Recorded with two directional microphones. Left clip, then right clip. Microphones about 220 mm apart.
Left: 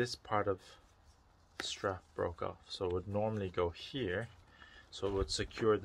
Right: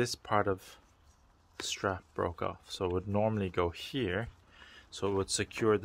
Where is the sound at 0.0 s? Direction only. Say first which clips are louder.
Right 4 dB; 50° right (ahead or behind).